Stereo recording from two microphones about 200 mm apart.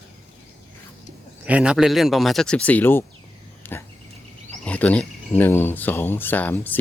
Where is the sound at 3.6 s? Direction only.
10° left (ahead or behind).